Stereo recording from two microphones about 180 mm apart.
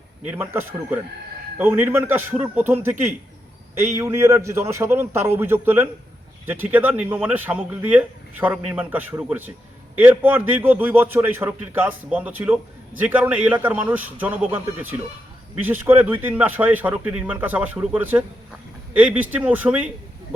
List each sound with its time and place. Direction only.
0.3 s a man's voice: 10° right (ahead or behind)